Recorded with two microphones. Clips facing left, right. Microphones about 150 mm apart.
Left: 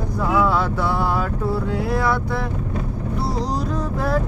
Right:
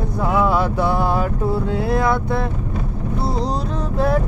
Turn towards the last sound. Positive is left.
turn(degrees=-20)  # may be behind; listen again after turning